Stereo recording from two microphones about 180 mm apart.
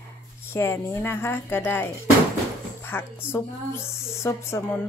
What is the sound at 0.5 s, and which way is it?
A woman's voice, 15° left (ahead or behind).